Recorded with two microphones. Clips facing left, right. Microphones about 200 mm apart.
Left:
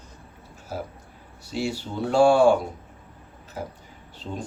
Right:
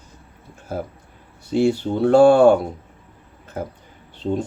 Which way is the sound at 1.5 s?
55° right (ahead or behind).